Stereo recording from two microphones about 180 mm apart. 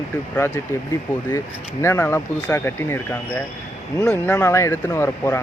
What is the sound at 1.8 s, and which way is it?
Speech, 10° left (ahead or behind).